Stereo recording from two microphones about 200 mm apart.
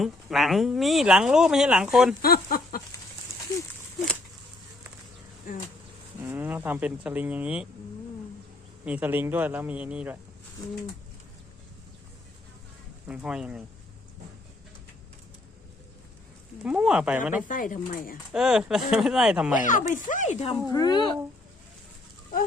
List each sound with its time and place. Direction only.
0.0 s speech: centre (ahead or behind)
2.2 s a sound: 50° left (ahead or behind)
5.5 s a sound: 45° left (ahead or behind)
6.2 s speech: 10° right (ahead or behind)
8.8 s a man's voice: 5° right (ahead or behind)
13.1 s speech: 5° right (ahead or behind)
16.6 s speech: 5° right (ahead or behind)
17.5 s speech: 40° left (ahead or behind)
18.3 s speech: 5° right (ahead or behind)
20.1 s speech: 40° left (ahead or behind); by 21.2 s 20° left (ahead or behind)